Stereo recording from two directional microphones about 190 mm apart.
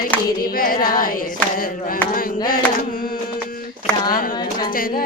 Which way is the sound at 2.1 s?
50° left (ahead or behind).